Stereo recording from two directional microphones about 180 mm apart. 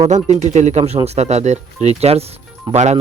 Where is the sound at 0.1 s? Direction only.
40° right (ahead or behind).